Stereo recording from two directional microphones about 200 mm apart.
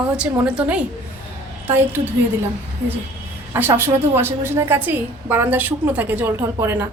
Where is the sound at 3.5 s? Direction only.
10° right (ahead or behind).